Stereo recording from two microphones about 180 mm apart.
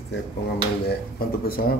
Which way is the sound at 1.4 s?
55° left (ahead or behind).